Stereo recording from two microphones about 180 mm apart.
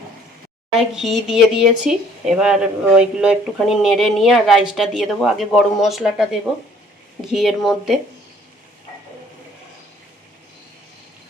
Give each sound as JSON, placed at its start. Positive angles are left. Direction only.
{"t": 0.8, "sound": "speech", "side_deg": 0}
{"t": 7.3, "sound": "speech", "side_deg": 0}